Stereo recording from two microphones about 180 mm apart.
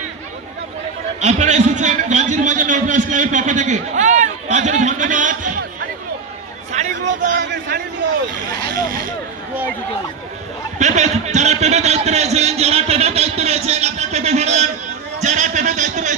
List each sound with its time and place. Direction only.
1.2 s a man's voice: 40° right (ahead or behind)
6.8 s a sound: 40° right (ahead or behind)
7.7 s a man's voice: 60° right (ahead or behind)
10.8 s a man's voice: 40° right (ahead or behind)